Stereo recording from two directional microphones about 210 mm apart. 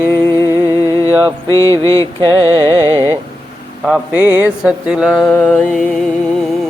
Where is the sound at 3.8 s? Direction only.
5° right (ahead or behind).